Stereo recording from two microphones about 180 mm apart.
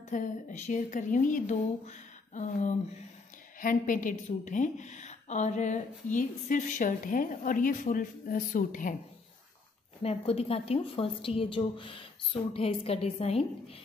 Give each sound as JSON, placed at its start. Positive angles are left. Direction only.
{"t": 0.1, "sound": "a woman's voice", "side_deg": 45}
{"t": 10.0, "sound": "a woman's voice", "side_deg": 35}